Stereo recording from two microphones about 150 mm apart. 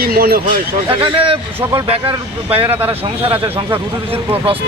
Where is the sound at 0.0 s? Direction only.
90° right.